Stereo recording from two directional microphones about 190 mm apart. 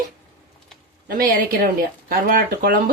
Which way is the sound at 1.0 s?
50° right (ahead or behind).